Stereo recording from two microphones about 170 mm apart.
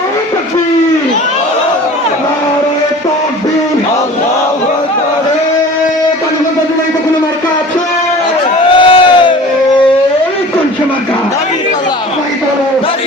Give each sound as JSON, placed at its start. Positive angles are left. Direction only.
{"t": 8.7, "sound": "crowd", "side_deg": 30}